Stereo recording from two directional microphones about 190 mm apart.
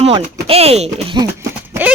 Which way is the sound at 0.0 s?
30° right (ahead or behind).